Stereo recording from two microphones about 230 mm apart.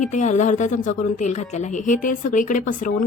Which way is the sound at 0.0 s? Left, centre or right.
Left.